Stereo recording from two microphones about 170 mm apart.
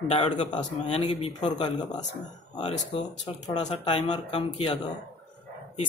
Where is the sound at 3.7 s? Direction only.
40° left (ahead or behind).